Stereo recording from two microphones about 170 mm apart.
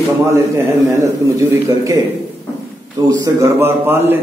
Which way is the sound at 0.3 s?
15° right (ahead or behind).